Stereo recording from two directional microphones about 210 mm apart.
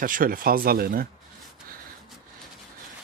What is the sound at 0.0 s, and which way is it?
Speech, 40° right (ahead or behind).